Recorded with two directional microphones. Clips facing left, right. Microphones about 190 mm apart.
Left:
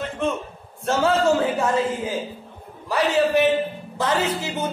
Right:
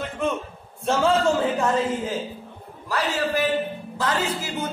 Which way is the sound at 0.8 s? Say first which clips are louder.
Left 1 dB; 5° left (ahead or behind).